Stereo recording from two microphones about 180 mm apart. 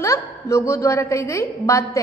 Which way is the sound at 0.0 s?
15° left (ahead or behind).